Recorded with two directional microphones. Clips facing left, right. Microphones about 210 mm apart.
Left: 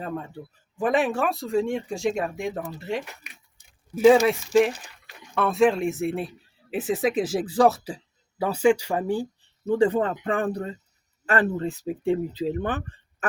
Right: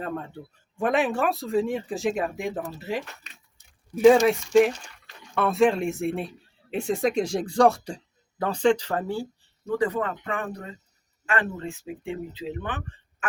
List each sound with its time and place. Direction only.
0.3 s speech: centre (ahead or behind)
3.0 s speech: 15° left (ahead or behind)
3.6 s speech: centre (ahead or behind)
9.6 s speech: 30° left (ahead or behind)